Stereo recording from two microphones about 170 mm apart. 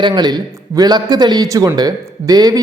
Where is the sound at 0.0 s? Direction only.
25° right (ahead or behind).